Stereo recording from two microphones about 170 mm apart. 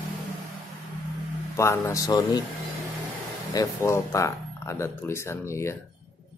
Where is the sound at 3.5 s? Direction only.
15° left (ahead or behind).